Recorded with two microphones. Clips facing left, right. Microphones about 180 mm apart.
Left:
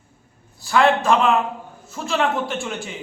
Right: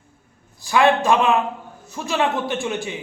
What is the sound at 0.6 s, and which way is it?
A man's voice, 15° right (ahead or behind).